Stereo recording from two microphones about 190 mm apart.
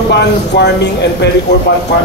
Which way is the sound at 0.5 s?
60° left (ahead or behind).